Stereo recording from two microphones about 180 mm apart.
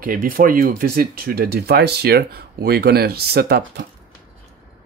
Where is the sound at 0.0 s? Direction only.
50° right (ahead or behind).